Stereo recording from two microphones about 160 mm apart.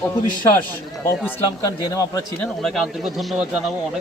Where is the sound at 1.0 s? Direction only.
15° left (ahead or behind).